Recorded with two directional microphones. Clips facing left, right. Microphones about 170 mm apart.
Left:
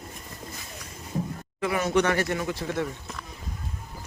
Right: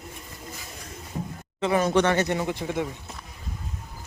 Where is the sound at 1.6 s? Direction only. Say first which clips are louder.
Right 2 dB; 30° right (ahead or behind).